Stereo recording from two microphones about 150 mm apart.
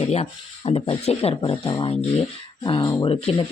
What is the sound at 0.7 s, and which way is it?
Speech, 40° left (ahead or behind).